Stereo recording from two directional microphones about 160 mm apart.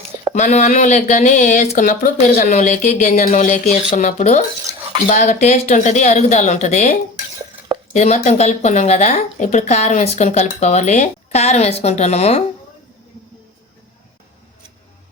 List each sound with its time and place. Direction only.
0.3 s speech: 50° left (ahead or behind)
7.9 s speech: 50° left (ahead or behind)